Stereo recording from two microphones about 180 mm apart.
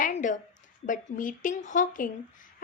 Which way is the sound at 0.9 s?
45° left (ahead or behind).